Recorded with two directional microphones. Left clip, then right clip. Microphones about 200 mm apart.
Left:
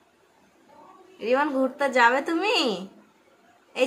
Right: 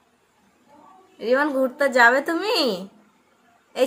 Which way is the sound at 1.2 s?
20° right (ahead or behind).